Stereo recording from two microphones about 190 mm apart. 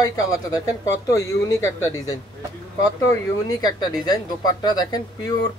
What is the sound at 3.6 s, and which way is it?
Speech, 20° left (ahead or behind).